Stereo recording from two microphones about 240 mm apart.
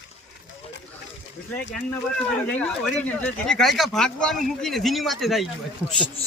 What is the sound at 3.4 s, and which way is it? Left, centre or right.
Speech, centre.